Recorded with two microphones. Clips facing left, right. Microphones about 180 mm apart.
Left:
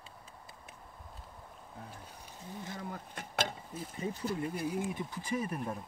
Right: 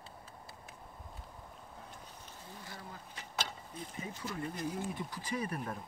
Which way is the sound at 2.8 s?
60° left (ahead or behind).